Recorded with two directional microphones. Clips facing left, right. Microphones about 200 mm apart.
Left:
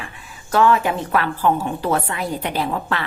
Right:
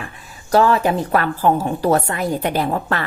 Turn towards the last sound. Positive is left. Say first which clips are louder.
# right 2 dB
turn(degrees=-45)  # may be behind; listen again after turning